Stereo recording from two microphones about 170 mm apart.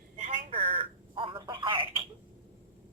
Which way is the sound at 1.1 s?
30° right (ahead or behind).